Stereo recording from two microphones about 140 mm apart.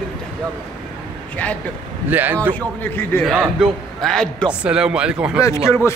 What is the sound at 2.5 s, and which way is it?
Speech, 15° left (ahead or behind).